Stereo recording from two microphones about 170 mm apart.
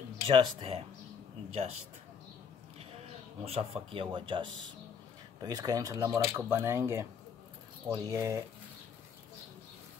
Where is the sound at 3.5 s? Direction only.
35° right (ahead or behind); by 8.4 s 20° right (ahead or behind).